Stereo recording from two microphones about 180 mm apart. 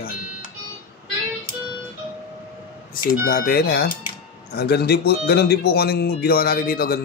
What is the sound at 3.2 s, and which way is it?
A man's voice, 60° left (ahead or behind).